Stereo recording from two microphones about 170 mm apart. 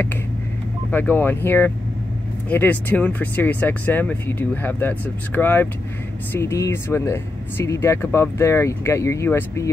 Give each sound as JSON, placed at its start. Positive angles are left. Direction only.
{"t": 0.9, "sound": "speech", "side_deg": 10}